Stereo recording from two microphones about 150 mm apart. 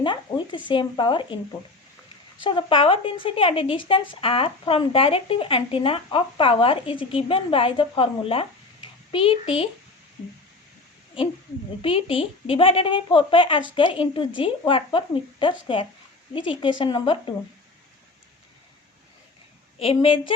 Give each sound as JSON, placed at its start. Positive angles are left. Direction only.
{"t": 0.0, "sound": "a sound", "side_deg": 30}
{"t": 0.7, "sound": "speech", "side_deg": 30}
{"t": 2.4, "sound": "speech", "side_deg": 35}
{"t": 11.8, "sound": "speech", "side_deg": 40}
{"t": 19.8, "sound": "speech", "side_deg": 40}